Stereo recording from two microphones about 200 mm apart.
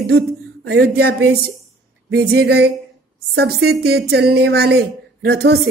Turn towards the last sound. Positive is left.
turn(degrees=-55)  # may be behind; listen again after turning